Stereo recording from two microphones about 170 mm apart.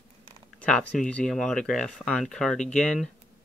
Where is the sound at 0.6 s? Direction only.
5° left (ahead or behind).